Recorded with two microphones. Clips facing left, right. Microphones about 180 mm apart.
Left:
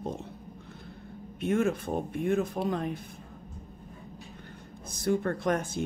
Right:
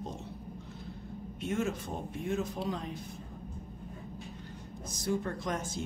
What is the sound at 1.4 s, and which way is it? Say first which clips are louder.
Speech: left 6 dB; 55° left (ahead or behind).